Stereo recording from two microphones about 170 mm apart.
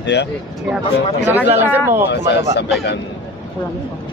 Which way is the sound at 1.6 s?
10° right (ahead or behind).